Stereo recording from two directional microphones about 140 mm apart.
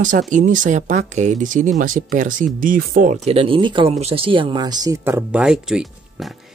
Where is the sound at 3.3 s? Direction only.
40° right (ahead or behind).